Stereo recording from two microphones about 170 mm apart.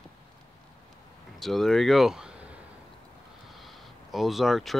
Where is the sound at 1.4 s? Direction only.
Centre (ahead or behind).